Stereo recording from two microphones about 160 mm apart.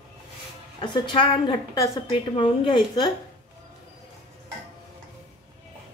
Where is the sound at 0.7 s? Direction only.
30° left (ahead or behind).